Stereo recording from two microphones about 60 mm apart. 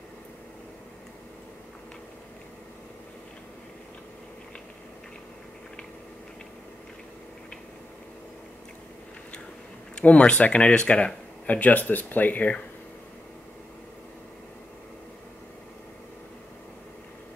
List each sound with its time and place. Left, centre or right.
9.9 s speech: centre